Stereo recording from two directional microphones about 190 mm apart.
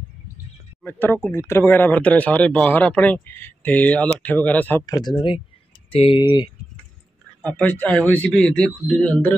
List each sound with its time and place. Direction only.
0.8 s speech: 10° left (ahead or behind)
7.4 s speech: 5° left (ahead or behind)